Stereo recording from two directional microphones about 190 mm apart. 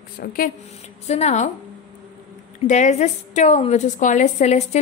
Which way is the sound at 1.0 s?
35° left (ahead or behind).